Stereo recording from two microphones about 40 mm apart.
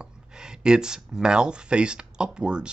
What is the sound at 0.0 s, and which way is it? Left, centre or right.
Speech, centre.